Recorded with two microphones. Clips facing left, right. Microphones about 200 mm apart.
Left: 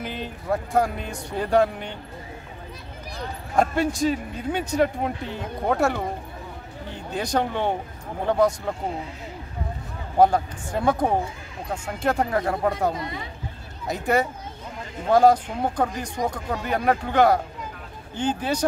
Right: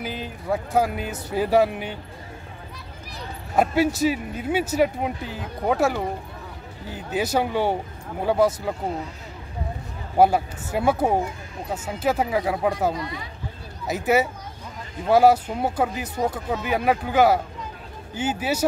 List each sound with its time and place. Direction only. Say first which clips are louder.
0.0 s speech: right 1 dB; centre (ahead or behind)
3.5 s speech: right 2 dB; 5° right (ahead or behind)
10.1 s speech: even; 10° right (ahead or behind)
12.9 s speech: even; 25° left (ahead or behind)
13.8 s speech: right 2 dB; 5° right (ahead or behind)